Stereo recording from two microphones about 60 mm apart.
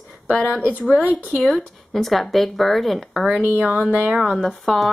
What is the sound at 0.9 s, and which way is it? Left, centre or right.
Speech, right.